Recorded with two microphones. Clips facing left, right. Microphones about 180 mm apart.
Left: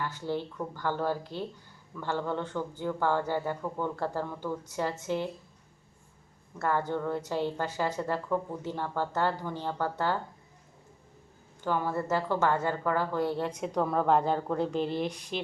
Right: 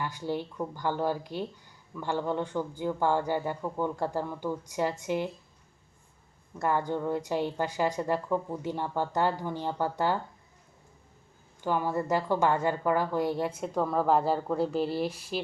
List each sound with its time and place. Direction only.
0.0 s a woman's voice: 15° right (ahead or behind)
6.6 s a woman's voice: 15° right (ahead or behind)
11.6 s a woman's voice: 15° right (ahead or behind)